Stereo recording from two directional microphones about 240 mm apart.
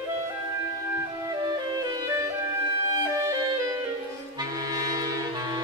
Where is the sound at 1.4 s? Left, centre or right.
Centre.